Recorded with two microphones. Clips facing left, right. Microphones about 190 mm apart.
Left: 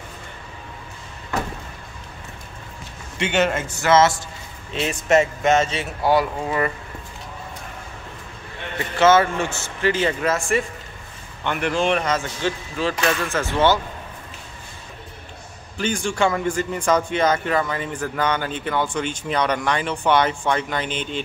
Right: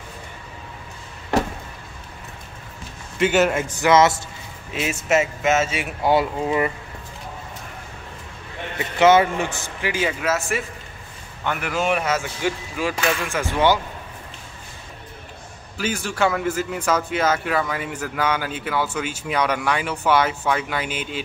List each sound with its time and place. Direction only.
3.2 s speech: 5° right (ahead or behind)
3.8 s speech: 15° right (ahead or behind)
4.7 s speech: 5° right (ahead or behind)
6.0 s speech: 20° right (ahead or behind)
8.7 s speech: 15° right (ahead or behind)
15.8 s speech: 5° right (ahead or behind)